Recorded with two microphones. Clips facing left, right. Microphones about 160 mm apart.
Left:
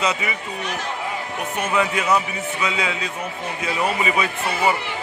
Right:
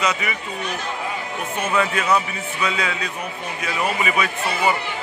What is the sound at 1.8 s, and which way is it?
A man's voice, 15° left (ahead or behind).